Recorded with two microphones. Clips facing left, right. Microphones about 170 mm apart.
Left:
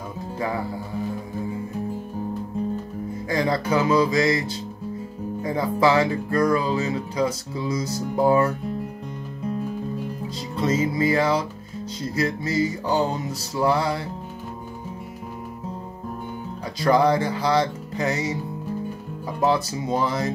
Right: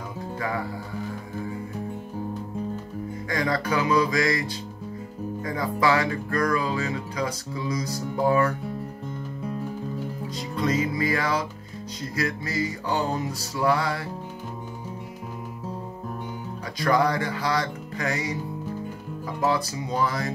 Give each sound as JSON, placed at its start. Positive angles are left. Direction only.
{"t": 3.3, "sound": "speech", "side_deg": 25}
{"t": 10.5, "sound": "speech", "side_deg": 25}
{"t": 16.8, "sound": "speech", "side_deg": 25}
{"t": 19.4, "sound": "speech", "side_deg": 25}